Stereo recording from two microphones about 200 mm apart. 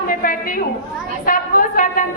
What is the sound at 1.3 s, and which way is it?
Speech, 40° left (ahead or behind).